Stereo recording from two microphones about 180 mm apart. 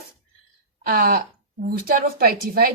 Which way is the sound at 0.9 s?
55° right (ahead or behind).